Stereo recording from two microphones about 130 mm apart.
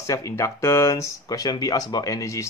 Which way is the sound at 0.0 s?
25° left (ahead or behind).